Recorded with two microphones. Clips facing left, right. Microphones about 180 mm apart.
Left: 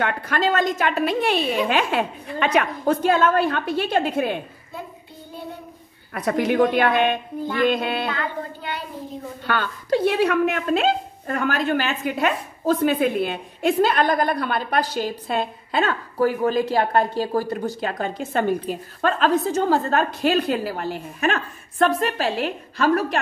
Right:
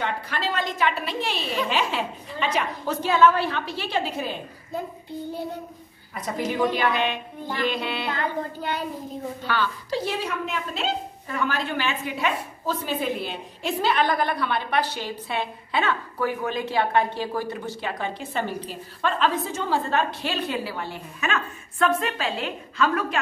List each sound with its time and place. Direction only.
0.0 s a woman's voice: 50° left (ahead or behind)
6.1 s speech: 65° left (ahead or behind)
6.6 s a woman's voice: 55° left (ahead or behind)
9.5 s a woman's voice: 50° left (ahead or behind)